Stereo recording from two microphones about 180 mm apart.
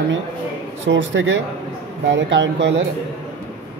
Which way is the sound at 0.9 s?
90° right.